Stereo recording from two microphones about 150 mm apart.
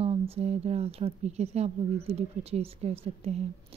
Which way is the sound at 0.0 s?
40° right (ahead or behind).